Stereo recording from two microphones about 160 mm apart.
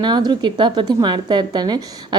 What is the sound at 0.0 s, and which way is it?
A woman's voice, 25° right (ahead or behind).